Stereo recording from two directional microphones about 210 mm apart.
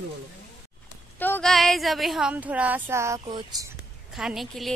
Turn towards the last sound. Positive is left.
turn(degrees=0)  # may be behind; listen again after turning